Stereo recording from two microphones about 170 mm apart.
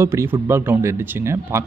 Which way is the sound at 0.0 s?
15° right (ahead or behind).